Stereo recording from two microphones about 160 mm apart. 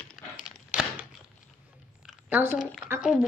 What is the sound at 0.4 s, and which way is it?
Thunk, 5° right (ahead or behind).